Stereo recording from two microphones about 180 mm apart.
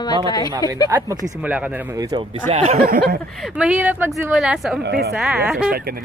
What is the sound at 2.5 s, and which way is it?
Speech, 35° right (ahead or behind).